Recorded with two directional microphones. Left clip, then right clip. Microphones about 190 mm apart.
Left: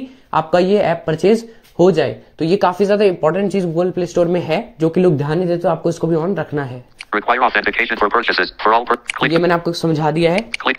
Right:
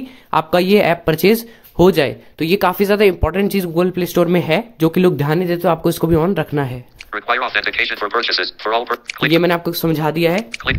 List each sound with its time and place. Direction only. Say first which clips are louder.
0.3 s speech: even; 25° right (ahead or behind)
7.1 s speech: left 4 dB; 10° right (ahead or behind)